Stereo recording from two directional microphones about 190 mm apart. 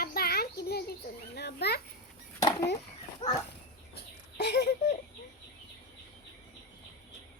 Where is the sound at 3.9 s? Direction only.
60° left (ahead or behind).